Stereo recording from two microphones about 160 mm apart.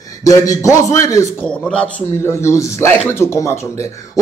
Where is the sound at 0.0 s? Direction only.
20° left (ahead or behind).